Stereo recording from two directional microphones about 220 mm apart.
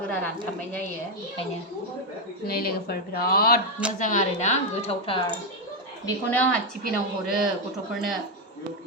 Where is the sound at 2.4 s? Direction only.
45° left (ahead or behind).